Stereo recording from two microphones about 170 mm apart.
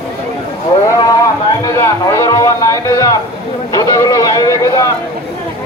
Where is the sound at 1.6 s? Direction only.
15° left (ahead or behind).